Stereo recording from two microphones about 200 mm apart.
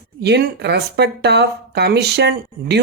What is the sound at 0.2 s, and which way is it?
Speech, 55° right (ahead or behind).